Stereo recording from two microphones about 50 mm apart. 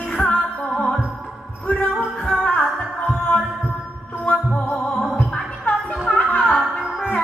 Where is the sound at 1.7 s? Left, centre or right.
Left.